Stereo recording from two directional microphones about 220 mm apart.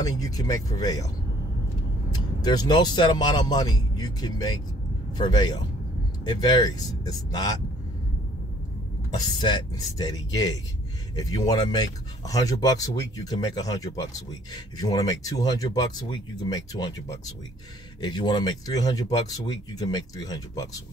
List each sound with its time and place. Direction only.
0.2 s speech: 15° left (ahead or behind)
2.1 s speech: 20° left (ahead or behind)
9.1 s speech: 20° left (ahead or behind)
18.0 s speech: 20° left (ahead or behind)